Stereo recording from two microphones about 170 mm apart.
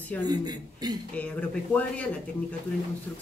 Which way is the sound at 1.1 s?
10° left (ahead or behind).